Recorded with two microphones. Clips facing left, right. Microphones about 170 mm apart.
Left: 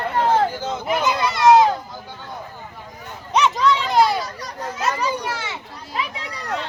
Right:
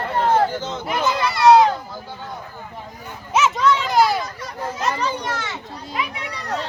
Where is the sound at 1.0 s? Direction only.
20° left (ahead or behind).